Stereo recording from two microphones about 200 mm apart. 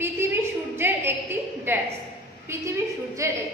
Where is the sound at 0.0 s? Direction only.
10° right (ahead or behind).